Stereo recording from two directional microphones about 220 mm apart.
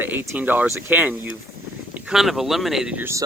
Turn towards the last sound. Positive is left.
turn(degrees=-10)  # may be behind; listen again after turning